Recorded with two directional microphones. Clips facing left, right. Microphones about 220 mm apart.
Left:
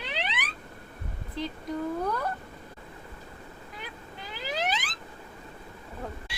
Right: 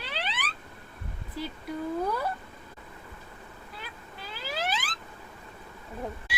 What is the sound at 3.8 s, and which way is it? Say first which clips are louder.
Vehicle: left 2 dB; 15° left (ahead or behind).